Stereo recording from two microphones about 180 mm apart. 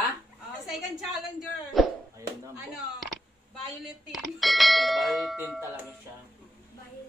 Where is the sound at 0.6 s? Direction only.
Centre (ahead or behind).